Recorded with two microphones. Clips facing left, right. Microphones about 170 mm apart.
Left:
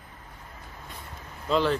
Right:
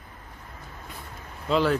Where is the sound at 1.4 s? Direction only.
Centre (ahead or behind).